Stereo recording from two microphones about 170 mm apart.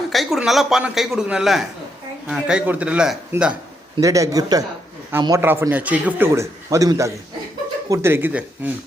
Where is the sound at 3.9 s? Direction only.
20° right (ahead or behind).